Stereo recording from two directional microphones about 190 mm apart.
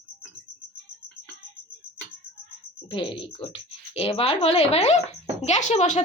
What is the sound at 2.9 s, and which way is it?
Speech, 25° left (ahead or behind).